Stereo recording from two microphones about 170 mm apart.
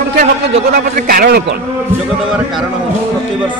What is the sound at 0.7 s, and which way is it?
Speech, 60° right (ahead or behind).